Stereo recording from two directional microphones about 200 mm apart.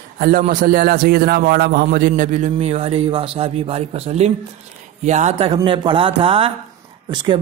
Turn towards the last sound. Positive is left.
turn(degrees=-25)  # may be behind; listen again after turning